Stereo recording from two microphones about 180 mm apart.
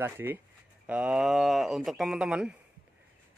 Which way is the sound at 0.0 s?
10° right (ahead or behind).